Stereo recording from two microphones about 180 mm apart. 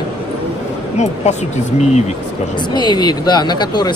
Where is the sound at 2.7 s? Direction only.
25° left (ahead or behind).